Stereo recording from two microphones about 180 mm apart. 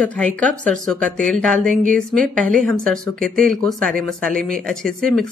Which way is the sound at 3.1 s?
50° right (ahead or behind).